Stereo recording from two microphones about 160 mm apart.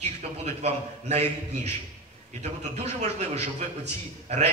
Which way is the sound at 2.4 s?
45° right (ahead or behind).